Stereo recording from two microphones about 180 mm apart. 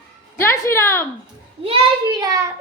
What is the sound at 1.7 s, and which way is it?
Speech, 25° right (ahead or behind).